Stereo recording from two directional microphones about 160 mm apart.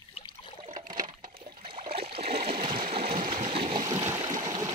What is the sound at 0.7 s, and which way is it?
Liquid, 60° right (ahead or behind).